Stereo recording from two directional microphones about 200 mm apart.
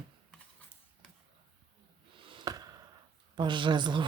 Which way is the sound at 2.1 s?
25° right (ahead or behind).